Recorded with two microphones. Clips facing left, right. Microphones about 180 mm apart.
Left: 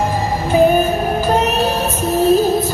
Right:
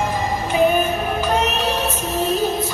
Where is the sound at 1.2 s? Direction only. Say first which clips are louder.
Left 4 dB; 35° left (ahead or behind).